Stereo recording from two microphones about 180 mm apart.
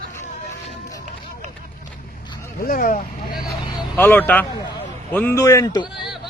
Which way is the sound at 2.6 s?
50° left (ahead or behind).